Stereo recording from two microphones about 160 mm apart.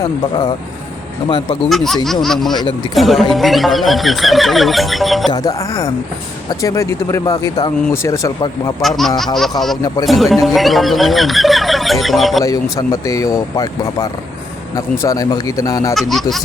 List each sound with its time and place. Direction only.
0.0 s speech: 25° left (ahead or behind)
1.7 s speech: centre (ahead or behind)
2.5 s speech: 30° left (ahead or behind)
2.9 s speech: centre (ahead or behind)
5.3 s speech: 25° left (ahead or behind)
8.8 s speech: centre (ahead or behind)
12.7 s speech: 20° left (ahead or behind)
16.0 s speech: centre (ahead or behind)